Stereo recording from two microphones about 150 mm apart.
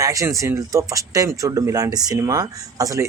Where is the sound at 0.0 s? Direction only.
20° right (ahead or behind).